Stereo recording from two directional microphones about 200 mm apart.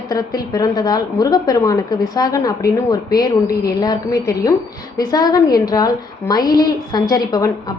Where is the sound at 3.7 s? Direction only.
20° left (ahead or behind).